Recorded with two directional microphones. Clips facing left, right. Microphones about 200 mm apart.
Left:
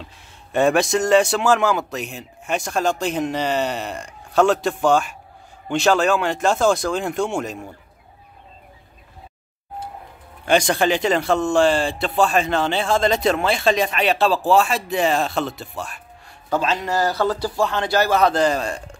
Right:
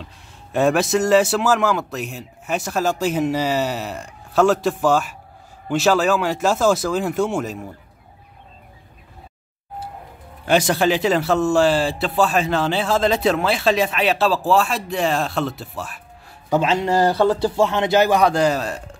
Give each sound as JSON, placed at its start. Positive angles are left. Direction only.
{"t": 0.5, "sound": "a man's voice", "side_deg": 0}
{"t": 10.4, "sound": "a man's voice", "side_deg": -5}
{"t": 16.4, "sound": "speech", "side_deg": -20}